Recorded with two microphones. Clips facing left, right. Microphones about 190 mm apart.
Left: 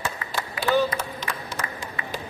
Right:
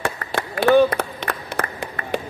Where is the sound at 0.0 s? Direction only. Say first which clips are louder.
Right 5 dB; 60° right (ahead or behind).